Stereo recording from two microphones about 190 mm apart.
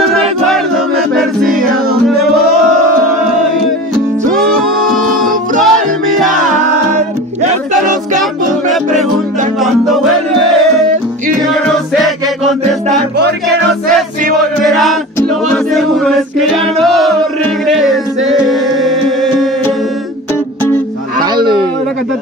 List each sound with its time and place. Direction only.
1.1 s music: centre (ahead or behind)
5.2 s music: centre (ahead or behind)
9.6 s music: centre (ahead or behind)
11.6 s music: centre (ahead or behind)
13.7 s music: centre (ahead or behind)
15.1 s a capella: 5° left (ahead or behind)
17.6 s music: centre (ahead or behind)
21.2 s a sound: 20° right (ahead or behind)